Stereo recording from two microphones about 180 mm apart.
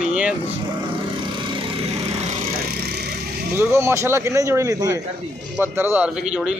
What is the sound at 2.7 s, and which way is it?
Vehicle, 60° right (ahead or behind).